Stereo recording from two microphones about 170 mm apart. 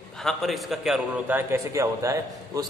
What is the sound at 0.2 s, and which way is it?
A man's voice, centre (ahead or behind).